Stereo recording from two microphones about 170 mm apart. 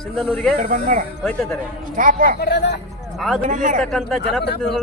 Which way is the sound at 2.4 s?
75° left (ahead or behind).